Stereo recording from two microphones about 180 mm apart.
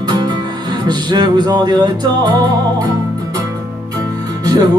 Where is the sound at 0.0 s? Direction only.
25° right (ahead or behind).